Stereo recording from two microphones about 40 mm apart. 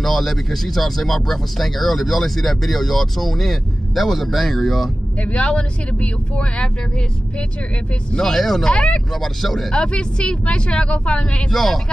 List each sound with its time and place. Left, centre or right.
0.0 s speech: centre
5.2 s speech: left
8.1 s speech: centre
8.7 s speech: left
9.1 s speech: centre
9.7 s speech: left
11.5 s speech: centre